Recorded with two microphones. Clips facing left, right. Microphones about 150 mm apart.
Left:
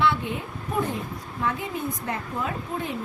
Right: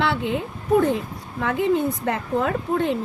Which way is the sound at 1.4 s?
85° right.